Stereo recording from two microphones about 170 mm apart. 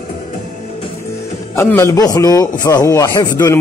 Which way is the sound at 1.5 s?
15° left (ahead or behind).